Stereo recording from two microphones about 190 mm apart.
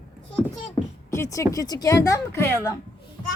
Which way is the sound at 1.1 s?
15° left (ahead or behind).